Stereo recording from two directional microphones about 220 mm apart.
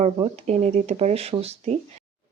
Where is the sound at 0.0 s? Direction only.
30° right (ahead or behind).